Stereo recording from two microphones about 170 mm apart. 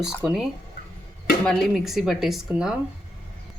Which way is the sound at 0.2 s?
5° right (ahead or behind).